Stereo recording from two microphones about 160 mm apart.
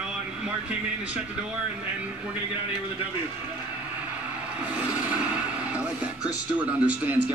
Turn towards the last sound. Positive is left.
turn(degrees=-10)  # may be behind; listen again after turning